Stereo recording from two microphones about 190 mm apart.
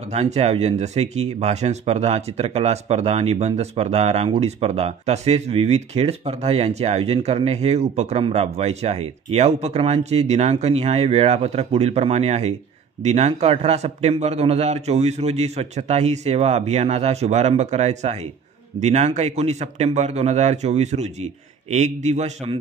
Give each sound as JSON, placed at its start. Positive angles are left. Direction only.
{"t": 0.1, "sound": "speech", "side_deg": -35}